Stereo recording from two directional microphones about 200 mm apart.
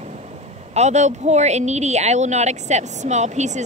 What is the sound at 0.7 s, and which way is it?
Speech, 35° right (ahead or behind).